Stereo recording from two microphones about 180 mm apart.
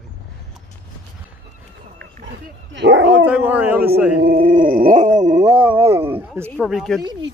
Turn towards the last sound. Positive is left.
turn(degrees=0)  # may be behind; listen again after turning